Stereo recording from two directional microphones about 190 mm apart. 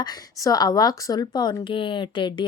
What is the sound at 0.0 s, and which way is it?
Speech, 20° left (ahead or behind).